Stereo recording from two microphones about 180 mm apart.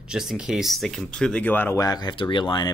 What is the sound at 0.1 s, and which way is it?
Speech, centre (ahead or behind).